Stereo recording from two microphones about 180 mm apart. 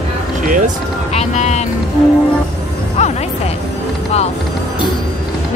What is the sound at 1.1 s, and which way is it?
Speech, 35° left (ahead or behind).